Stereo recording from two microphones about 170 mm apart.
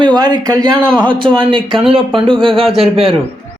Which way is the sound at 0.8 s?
5° left (ahead or behind).